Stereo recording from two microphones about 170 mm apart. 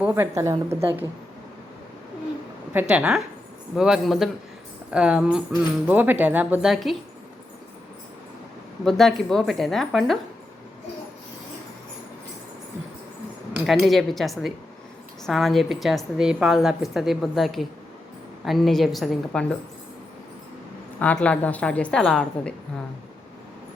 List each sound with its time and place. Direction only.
0.0 s a woman's voice: 15° right (ahead or behind)
2.7 s a woman's voice: 5° right (ahead or behind)
8.8 s a woman's voice: centre (ahead or behind)
13.7 s a woman's voice: centre (ahead or behind)
21.0 s a woman's voice: 5° left (ahead or behind)